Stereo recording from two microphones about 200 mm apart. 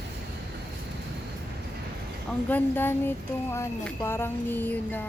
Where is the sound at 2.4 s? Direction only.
10° left (ahead or behind).